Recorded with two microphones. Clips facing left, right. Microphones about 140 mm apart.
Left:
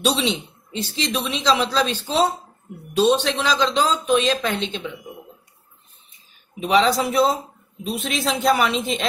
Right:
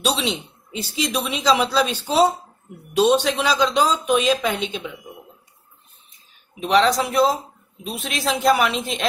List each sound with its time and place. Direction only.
0.0 s speech: centre (ahead or behind)
6.6 s a woman's voice: centre (ahead or behind)